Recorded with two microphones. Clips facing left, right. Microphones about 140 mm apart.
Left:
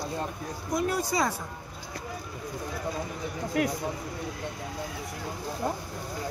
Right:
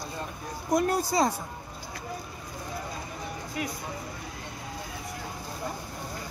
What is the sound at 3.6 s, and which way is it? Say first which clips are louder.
Speech: left 7 dB; 75° left (ahead or behind).